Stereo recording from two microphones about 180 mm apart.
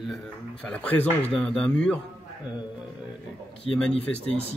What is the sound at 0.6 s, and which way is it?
Speech, 10° left (ahead or behind).